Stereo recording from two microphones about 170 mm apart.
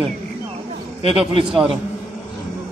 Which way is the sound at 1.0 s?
30° right (ahead or behind).